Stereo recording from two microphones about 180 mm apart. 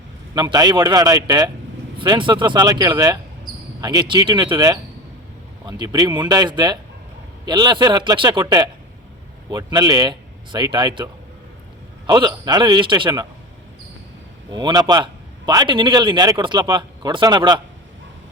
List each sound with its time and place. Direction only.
0.3 s a man's voice: 20° right (ahead or behind)
14.5 s a man's voice: 25° right (ahead or behind)